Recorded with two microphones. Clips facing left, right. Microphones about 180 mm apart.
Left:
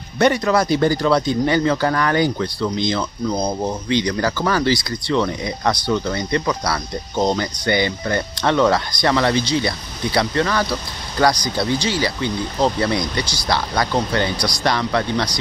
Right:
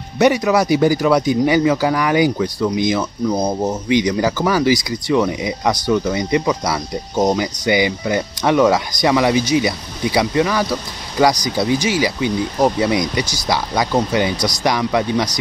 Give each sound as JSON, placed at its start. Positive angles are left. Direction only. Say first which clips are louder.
{"t": 0.2, "sound": "speech", "louder": "right 2 dB", "side_deg": -10}
{"t": 14.3, "sound": "speech", "louder": "right 3 dB", "side_deg": -45}
{"t": 14.6, "sound": "speech", "louder": "right 2 dB", "side_deg": -15}